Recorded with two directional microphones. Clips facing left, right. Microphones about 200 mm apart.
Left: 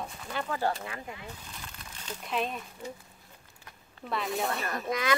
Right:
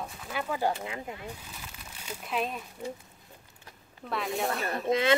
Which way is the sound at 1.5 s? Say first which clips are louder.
Even; 5° right (ahead or behind).